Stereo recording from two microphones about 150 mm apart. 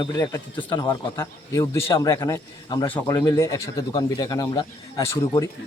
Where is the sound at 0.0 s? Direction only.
30° left (ahead or behind).